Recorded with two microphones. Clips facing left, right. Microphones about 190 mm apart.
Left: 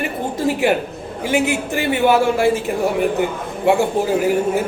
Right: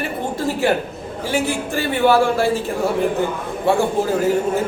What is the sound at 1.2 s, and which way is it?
A man's voice, 20° left (ahead or behind).